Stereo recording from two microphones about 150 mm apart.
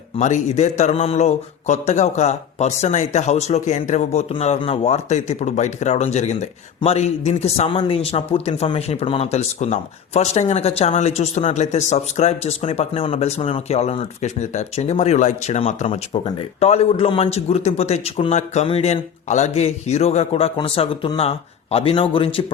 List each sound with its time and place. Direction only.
0.2 s speech: 50° left (ahead or behind)